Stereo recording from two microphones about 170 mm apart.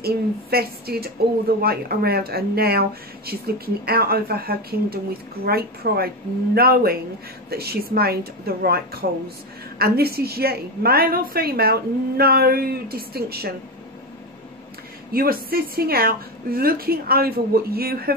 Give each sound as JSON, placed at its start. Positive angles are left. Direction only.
{"t": 0.0, "sound": "speech", "side_deg": -65}
{"t": 15.1, "sound": "speech", "side_deg": -60}